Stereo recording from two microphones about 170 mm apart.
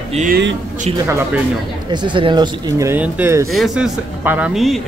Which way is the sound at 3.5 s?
Centre (ahead or behind).